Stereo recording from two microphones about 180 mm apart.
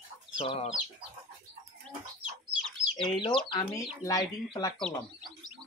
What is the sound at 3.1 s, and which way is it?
Speech, 25° left (ahead or behind).